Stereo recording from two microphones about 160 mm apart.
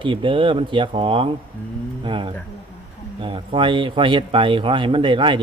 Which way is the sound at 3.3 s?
30° right (ahead or behind).